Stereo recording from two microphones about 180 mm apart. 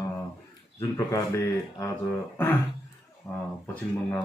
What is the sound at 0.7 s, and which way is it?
Speech, 15° left (ahead or behind).